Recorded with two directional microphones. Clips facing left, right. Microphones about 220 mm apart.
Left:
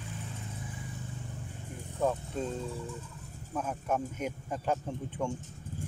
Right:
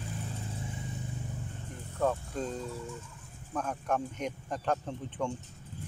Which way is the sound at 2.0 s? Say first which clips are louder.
Even; 15° left (ahead or behind).